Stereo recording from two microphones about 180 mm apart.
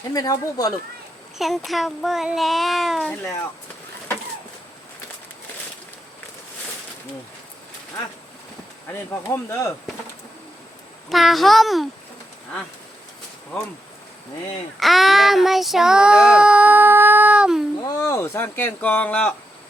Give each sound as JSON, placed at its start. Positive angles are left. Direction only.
{"t": 0.1, "sound": "speech", "side_deg": 20}
{"t": 1.4, "sound": "child singing", "side_deg": 0}
{"t": 9.2, "sound": "speech", "side_deg": 15}
{"t": 11.1, "sound": "child singing", "side_deg": 0}
{"t": 14.8, "sound": "child singing", "side_deg": 0}
{"t": 17.7, "sound": "speech", "side_deg": 20}